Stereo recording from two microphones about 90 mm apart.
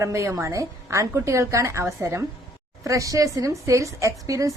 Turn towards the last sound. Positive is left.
turn(degrees=-35)  # may be behind; listen again after turning